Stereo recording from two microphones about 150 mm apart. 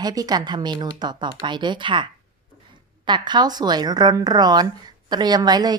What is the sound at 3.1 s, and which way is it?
A woman's voice, 30° right (ahead or behind).